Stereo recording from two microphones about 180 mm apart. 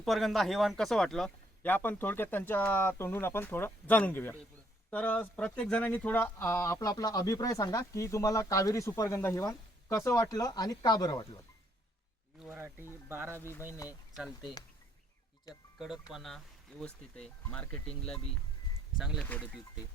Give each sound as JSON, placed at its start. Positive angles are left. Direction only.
{"t": 0.0, "sound": "speech", "side_deg": 0}
{"t": 12.4, "sound": "speech", "side_deg": -10}
{"t": 13.8, "sound": "speech", "side_deg": 0}
{"t": 15.8, "sound": "speech", "side_deg": 0}
{"t": 18.9, "sound": "speech", "side_deg": -5}